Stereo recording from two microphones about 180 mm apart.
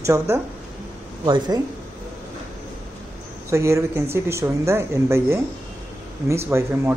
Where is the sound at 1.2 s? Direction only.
25° right (ahead or behind).